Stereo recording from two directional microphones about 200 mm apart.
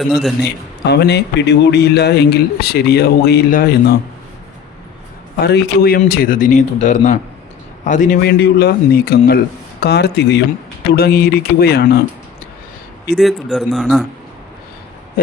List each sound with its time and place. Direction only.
0.0 s speech: centre (ahead or behind)
0.4 s a man's voice: 60° left (ahead or behind)
5.4 s a man's voice: 50° left (ahead or behind)
8.2 s a man's voice: 55° left (ahead or behind)
13.1 s speech: centre (ahead or behind)